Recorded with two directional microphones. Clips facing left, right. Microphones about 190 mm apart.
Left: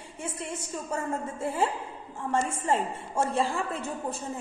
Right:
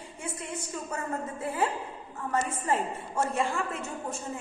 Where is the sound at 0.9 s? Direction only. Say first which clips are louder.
Left 3 dB; 30° left (ahead or behind).